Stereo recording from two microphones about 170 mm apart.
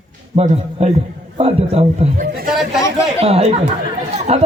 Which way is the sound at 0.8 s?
35° right (ahead or behind).